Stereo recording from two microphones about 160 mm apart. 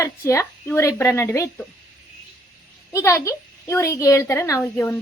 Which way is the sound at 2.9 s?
20° left (ahead or behind).